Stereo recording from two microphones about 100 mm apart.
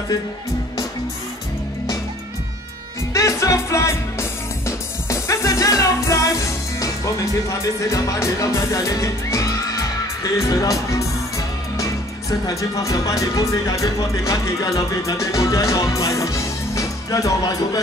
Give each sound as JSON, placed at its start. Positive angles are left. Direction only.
{"t": 3.1, "sound": "music", "side_deg": 30}
{"t": 10.2, "sound": "speech", "side_deg": 35}